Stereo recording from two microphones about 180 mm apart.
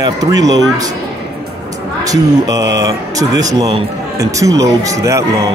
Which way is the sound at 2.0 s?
20° right (ahead or behind).